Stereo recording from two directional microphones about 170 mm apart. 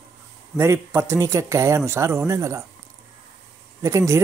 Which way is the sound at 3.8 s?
15° right (ahead or behind).